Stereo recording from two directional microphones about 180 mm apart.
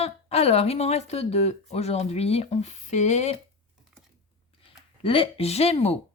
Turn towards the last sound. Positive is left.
turn(degrees=35)  # may be behind; listen again after turning